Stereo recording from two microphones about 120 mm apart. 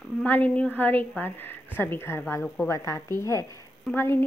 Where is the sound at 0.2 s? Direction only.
15° left (ahead or behind).